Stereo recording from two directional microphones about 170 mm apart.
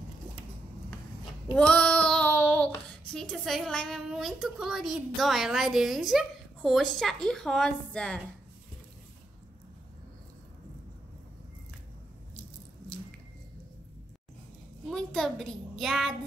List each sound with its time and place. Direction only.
1.5 s child singing: 5° left (ahead or behind)
3.1 s a woman's voice: centre (ahead or behind)
14.9 s a sound: centre (ahead or behind)